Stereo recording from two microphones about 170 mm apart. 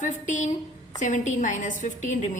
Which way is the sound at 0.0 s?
50° left (ahead or behind).